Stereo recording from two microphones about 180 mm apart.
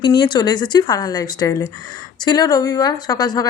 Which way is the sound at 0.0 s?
25° left (ahead or behind).